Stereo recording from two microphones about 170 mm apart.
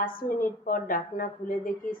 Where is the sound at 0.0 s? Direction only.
55° left (ahead or behind).